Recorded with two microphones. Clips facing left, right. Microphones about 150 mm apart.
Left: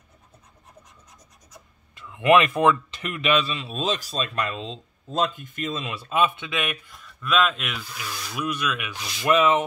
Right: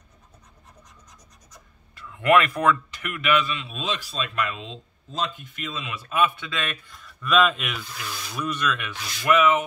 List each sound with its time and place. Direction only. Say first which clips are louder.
2.0 s speech: left 1 dB; 20° left (ahead or behind); by 4.7 s 35° left (ahead or behind)
5.1 s speech: left 5 dB; 50° left (ahead or behind)
6.0 s speech: even; 25° left (ahead or behind); by 8.9 s 10° left (ahead or behind)
8.9 s speech: left 1 dB; 20° left (ahead or behind)